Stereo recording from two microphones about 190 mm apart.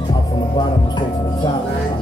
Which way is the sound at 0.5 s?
25° left (ahead or behind).